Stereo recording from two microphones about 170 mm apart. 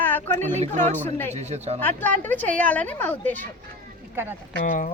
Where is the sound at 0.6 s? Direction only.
45° right (ahead or behind).